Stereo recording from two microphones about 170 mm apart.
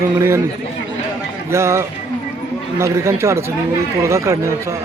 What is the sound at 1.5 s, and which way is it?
A man's voice, 15° right (ahead or behind).